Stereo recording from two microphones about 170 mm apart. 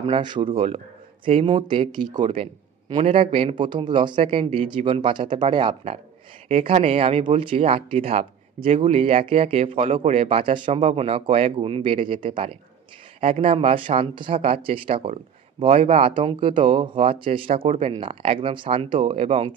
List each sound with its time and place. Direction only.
0.0 s a man's voice: 30° right (ahead or behind)